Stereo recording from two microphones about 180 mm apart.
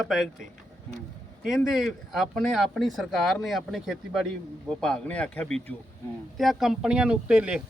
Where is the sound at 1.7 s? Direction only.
Centre (ahead or behind).